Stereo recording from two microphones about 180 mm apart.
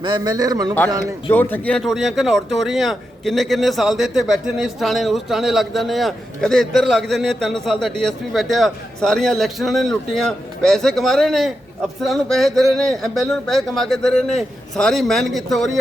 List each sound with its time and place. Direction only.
0.0 s a man's voice: 25° right (ahead or behind)
1.3 s speech: 10° left (ahead or behind)